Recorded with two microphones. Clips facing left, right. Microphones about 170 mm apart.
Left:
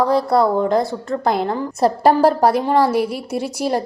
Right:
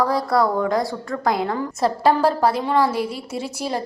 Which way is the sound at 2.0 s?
60° left (ahead or behind).